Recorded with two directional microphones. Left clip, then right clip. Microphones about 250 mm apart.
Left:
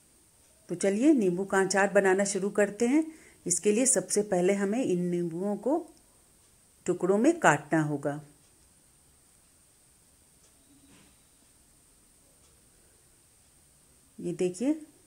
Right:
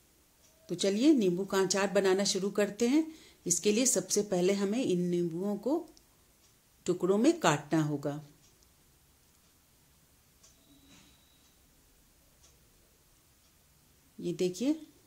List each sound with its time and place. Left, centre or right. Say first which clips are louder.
0.7 s a woman's voice: left 2 dB; centre
7.0 s a woman's voice: left 3 dB; centre
14.2 s speech: left 2 dB; centre